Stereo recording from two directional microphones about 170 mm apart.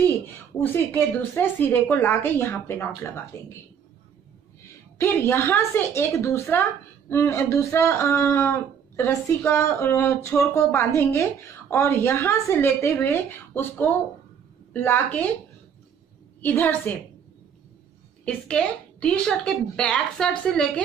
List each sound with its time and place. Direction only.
0.6 s speech: 10° left (ahead or behind)
4.9 s speech: 15° left (ahead or behind)
16.3 s a woman's voice: 10° left (ahead or behind)
18.2 s a woman's voice: 5° left (ahead or behind)